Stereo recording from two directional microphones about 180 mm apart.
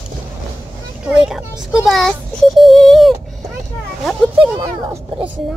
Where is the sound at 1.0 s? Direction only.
5° right (ahead or behind).